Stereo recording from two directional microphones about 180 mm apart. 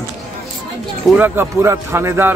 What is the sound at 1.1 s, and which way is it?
A man's voice, 10° right (ahead or behind).